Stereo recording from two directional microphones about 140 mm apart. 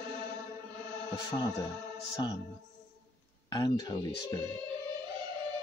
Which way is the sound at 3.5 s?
30° left (ahead or behind).